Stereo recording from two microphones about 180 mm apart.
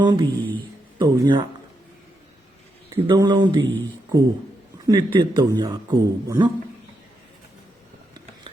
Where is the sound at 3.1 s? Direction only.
25° right (ahead or behind).